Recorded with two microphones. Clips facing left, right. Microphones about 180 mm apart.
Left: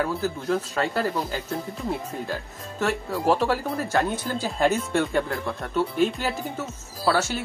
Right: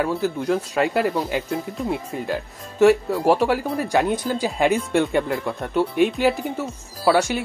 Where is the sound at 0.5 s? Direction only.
15° right (ahead or behind).